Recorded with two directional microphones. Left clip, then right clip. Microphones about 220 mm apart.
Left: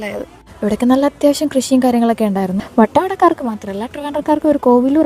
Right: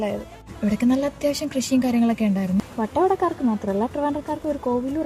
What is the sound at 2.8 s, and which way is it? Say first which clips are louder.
Speech: left 17 dB; 50° left (ahead or behind).